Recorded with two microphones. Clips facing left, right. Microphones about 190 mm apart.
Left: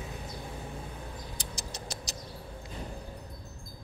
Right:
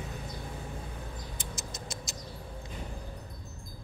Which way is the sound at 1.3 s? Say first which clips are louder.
Even; 35° left (ahead or behind).